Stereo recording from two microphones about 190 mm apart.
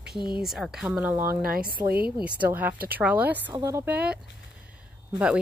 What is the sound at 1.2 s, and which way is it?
Speech, 50° right (ahead or behind).